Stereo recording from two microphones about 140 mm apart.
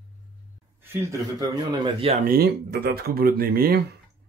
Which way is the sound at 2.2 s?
90° right.